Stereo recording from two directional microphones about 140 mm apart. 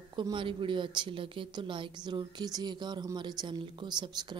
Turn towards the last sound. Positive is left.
turn(degrees=-35)  # may be behind; listen again after turning